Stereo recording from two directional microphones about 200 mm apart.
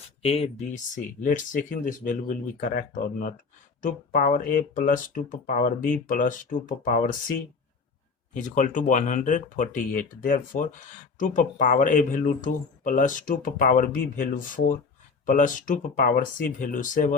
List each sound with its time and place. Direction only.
0.2 s speech: 30° left (ahead or behind)
8.3 s speech: 40° left (ahead or behind)